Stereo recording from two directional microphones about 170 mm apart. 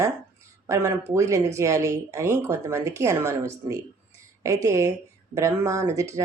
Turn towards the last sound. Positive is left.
turn(degrees=-20)  # may be behind; listen again after turning